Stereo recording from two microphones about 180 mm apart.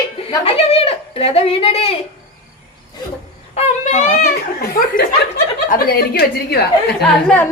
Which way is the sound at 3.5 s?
35° left (ahead or behind).